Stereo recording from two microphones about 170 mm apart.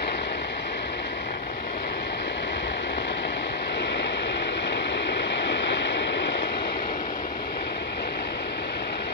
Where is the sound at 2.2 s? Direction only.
90° left; by 6.9 s 75° left (ahead or behind).